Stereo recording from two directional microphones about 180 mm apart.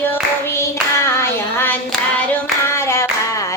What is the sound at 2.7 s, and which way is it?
Clapping, 15° left (ahead or behind).